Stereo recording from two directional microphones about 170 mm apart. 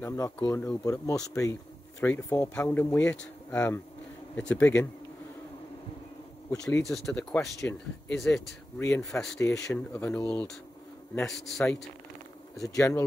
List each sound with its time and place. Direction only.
0.0 s speech: 15° left (ahead or behind)
6.8 s speech: centre (ahead or behind)
7.3 s speech: 10° left (ahead or behind)
12.5 s speech: 20° left (ahead or behind)